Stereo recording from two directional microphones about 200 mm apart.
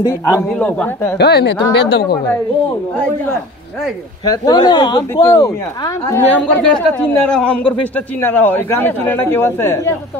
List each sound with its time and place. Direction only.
0.0 s a man's voice: 10° left (ahead or behind)
1.1 s a woman's voice: 55° left (ahead or behind)
4.2 s speech: 20° left (ahead or behind)